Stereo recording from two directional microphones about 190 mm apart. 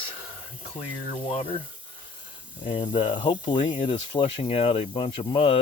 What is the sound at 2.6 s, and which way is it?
Speech, 30° left (ahead or behind).